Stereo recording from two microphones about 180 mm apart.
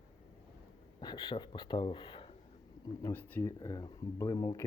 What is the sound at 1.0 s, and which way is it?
Speech, 25° left (ahead or behind).